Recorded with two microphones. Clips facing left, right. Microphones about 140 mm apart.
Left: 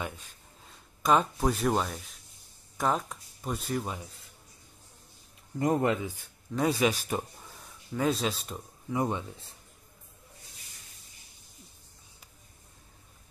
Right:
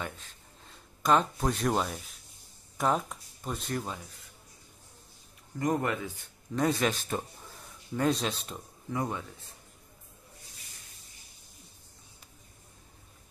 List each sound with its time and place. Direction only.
1.0 s speech: 5° left (ahead or behind)
5.6 s speech: 25° left (ahead or behind)
6.1 s speech: 5° left (ahead or behind)
7.5 s speech: centre (ahead or behind)
8.9 s speech: 20° left (ahead or behind)